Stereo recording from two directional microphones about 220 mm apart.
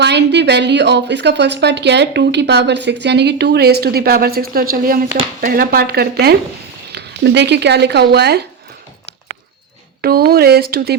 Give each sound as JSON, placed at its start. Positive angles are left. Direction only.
{"t": 0.0, "sound": "a woman's voice", "side_deg": -50}
{"t": 10.0, "sound": "a woman's voice", "side_deg": -45}